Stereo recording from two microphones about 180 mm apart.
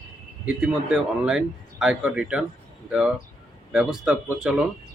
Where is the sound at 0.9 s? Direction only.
5° right (ahead or behind).